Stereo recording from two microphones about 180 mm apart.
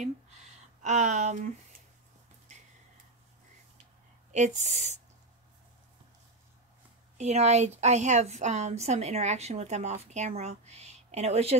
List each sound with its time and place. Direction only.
0.8 s a woman's voice: 40° right (ahead or behind)
4.3 s a woman's voice: 40° right (ahead or behind)
7.2 s a woman's voice: 40° right (ahead or behind)